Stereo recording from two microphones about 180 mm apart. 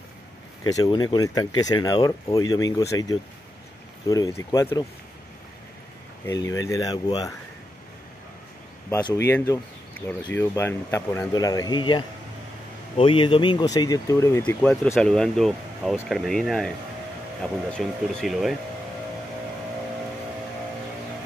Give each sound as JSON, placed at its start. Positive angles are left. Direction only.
{"t": 0.7, "sound": "speech", "side_deg": 20}
{"t": 6.2, "sound": "speech", "side_deg": 20}
{"t": 8.9, "sound": "speech", "side_deg": 15}
{"t": 17.7, "sound": "speech", "side_deg": 0}